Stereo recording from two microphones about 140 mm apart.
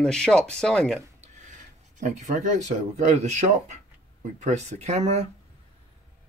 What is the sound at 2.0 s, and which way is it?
Speech, 65° right (ahead or behind).